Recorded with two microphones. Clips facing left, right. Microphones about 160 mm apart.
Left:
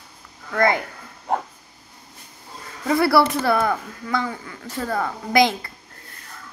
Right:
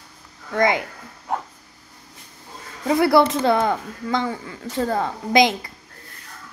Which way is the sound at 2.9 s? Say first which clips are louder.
Right 1 dB; 20° right (ahead or behind).